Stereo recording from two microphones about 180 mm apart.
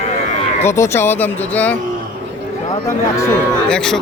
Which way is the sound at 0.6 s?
15° left (ahead or behind).